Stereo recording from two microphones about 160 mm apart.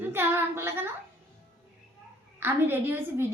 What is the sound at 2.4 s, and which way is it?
Speech, 15° right (ahead or behind).